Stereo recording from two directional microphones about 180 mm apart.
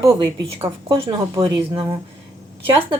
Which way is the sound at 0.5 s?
15° right (ahead or behind).